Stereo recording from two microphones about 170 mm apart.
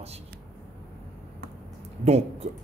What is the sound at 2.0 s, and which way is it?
Speech, 40° right (ahead or behind).